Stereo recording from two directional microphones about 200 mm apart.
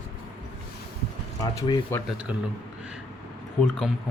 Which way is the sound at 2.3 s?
5° right (ahead or behind).